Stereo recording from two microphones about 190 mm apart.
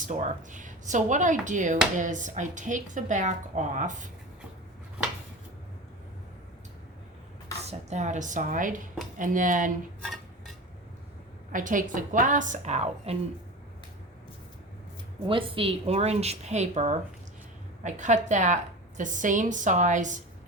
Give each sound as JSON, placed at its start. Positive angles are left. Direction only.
{"t": 0.0, "sound": "a woman's voice", "side_deg": -40}
{"t": 7.7, "sound": "a woman's voice", "side_deg": -35}
{"t": 10.0, "sound": "cutlery", "side_deg": 0}
{"t": 11.5, "sound": "a woman's voice", "side_deg": -45}
{"t": 15.3, "sound": "a woman's voice", "side_deg": -30}